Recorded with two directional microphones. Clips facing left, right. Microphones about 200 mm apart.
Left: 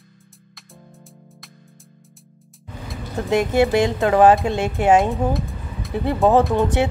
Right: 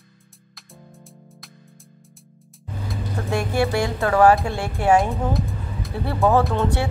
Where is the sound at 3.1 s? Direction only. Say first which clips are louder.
Left 5 dB; 20° left (ahead or behind).